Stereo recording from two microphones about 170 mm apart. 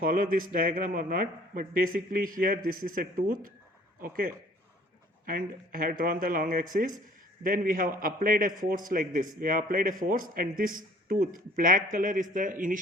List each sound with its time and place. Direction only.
0.0 s a man's voice: 55° right (ahead or behind)
5.2 s a man's voice: 55° right (ahead or behind)